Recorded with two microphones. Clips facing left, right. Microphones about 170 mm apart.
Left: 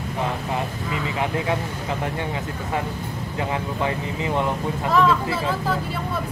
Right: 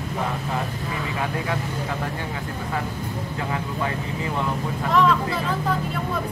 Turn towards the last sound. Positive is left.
turn(degrees=5)  # may be behind; listen again after turning